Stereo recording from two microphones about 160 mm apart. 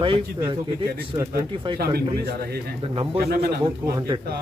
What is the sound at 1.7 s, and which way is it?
A man's voice, 80° right.